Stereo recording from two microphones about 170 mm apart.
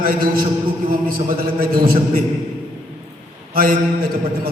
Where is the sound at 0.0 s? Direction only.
55° right (ahead or behind).